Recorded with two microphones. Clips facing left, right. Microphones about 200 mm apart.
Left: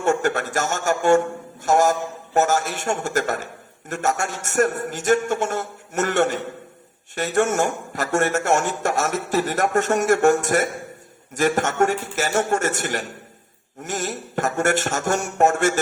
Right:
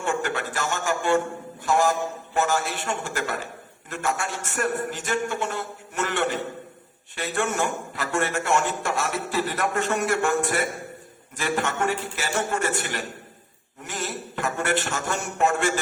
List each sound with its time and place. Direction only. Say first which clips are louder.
0.0 s a man's voice: left 6 dB; 45° left (ahead or behind)